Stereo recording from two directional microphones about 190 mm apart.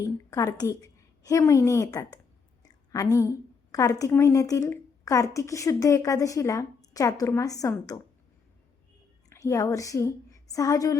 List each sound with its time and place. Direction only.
0.0 s a woman's voice: 20° left (ahead or behind)
9.3 s a woman's voice: 15° left (ahead or behind)